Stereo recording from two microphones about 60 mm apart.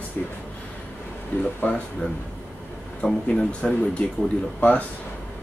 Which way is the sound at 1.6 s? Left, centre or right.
Left.